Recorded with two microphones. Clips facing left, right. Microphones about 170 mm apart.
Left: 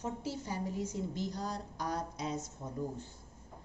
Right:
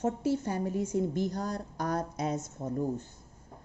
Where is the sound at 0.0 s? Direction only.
55° right (ahead or behind).